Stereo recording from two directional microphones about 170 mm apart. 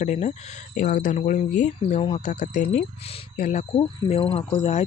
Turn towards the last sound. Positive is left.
turn(degrees=35)  # may be behind; listen again after turning